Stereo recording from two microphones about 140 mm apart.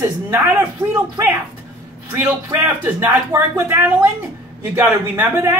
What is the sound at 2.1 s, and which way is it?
Speech, 15° right (ahead or behind).